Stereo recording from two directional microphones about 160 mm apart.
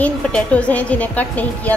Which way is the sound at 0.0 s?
10° left (ahead or behind).